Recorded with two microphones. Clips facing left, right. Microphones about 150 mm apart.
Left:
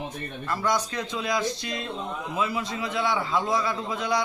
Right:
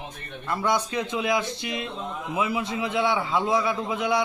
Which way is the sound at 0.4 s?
20° right (ahead or behind).